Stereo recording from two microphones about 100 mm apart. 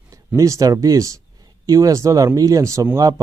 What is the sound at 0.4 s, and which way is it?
Speech, 35° right (ahead or behind).